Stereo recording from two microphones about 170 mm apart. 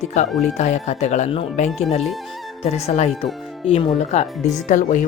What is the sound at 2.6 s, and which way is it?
Speech, 35° left (ahead or behind).